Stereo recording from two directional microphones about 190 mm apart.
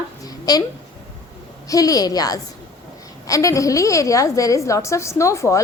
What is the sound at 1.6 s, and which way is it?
A woman's voice, 20° left (ahead or behind).